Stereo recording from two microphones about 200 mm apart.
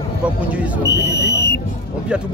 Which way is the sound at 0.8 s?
60° left (ahead or behind).